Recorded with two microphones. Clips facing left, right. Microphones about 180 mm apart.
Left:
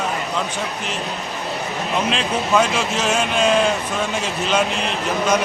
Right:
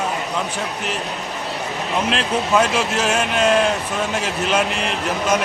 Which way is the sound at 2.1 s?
5° right (ahead or behind).